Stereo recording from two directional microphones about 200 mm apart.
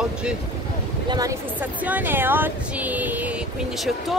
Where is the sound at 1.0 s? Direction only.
20° right (ahead or behind).